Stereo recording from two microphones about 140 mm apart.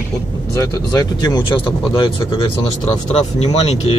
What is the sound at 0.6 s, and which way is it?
Speech, 25° left (ahead or behind).